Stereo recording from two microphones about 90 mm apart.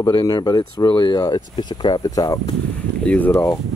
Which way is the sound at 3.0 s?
15° left (ahead or behind).